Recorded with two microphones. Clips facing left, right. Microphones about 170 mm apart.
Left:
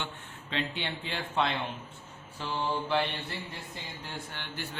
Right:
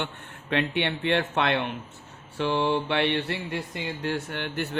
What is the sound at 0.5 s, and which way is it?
Speech, 65° right (ahead or behind).